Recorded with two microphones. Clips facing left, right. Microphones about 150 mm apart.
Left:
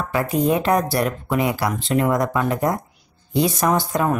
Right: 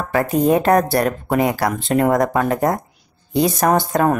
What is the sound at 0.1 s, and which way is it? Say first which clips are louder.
Speech: right 4 dB; 45° right (ahead or behind).